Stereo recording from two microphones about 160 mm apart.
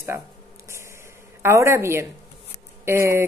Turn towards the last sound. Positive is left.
turn(degrees=-15)  # may be behind; listen again after turning